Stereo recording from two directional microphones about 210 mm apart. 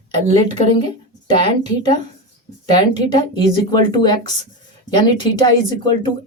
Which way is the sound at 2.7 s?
20° left (ahead or behind).